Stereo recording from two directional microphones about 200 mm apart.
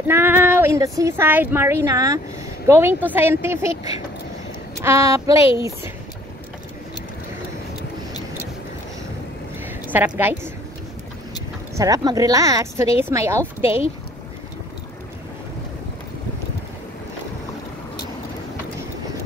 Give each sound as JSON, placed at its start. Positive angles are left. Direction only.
{"t": 0.0, "sound": "speech", "side_deg": -10}
{"t": 9.8, "sound": "speech", "side_deg": -10}
{"t": 11.7, "sound": "speech", "side_deg": -15}